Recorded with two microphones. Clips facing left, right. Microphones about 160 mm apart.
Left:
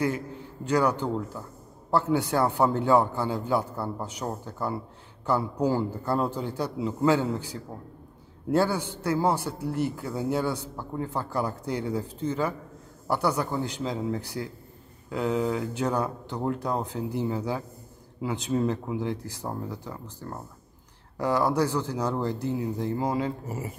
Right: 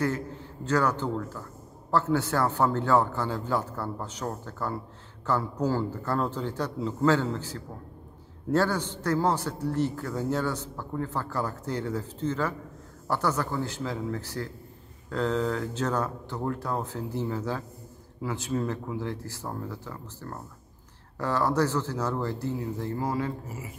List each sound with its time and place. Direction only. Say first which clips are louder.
0.7 s a man's voice: left 2 dB; 15° left (ahead or behind)